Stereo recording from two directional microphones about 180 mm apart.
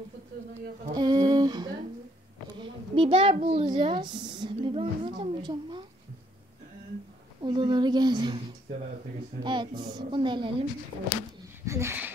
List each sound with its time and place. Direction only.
0.9 s a sound: 20° right (ahead or behind)
2.6 s a woman's voice: 30° right (ahead or behind)
7.4 s a woman's voice: 25° right (ahead or behind)
9.4 s a woman's voice: 25° right (ahead or behind)
11.6 s speech: 15° right (ahead or behind)